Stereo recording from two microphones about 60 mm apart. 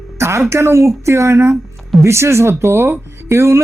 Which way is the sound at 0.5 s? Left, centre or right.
Right.